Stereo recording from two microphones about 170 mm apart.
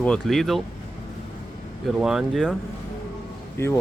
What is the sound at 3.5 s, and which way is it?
Speech, 15° left (ahead or behind).